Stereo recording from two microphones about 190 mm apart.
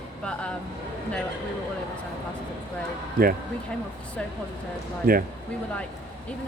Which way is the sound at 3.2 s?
50° right (ahead or behind).